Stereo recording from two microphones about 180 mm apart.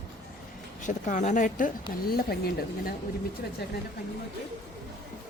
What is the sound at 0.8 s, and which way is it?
Speech, 45° left (ahead or behind).